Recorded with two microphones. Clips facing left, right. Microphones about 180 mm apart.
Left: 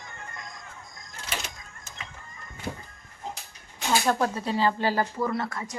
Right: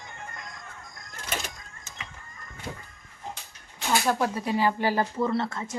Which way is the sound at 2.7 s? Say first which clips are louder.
Left 3 dB; 15° left (ahead or behind).